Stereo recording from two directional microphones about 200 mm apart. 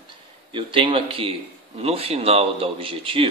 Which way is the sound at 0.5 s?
25° right (ahead or behind).